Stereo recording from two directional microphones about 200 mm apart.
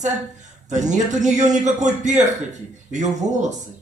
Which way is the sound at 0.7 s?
35° right (ahead or behind).